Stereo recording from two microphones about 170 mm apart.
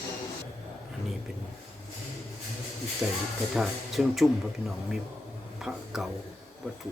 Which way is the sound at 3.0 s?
5° right (ahead or behind).